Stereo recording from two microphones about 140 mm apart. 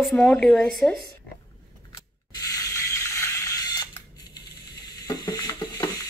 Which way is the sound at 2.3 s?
25° left (ahead or behind).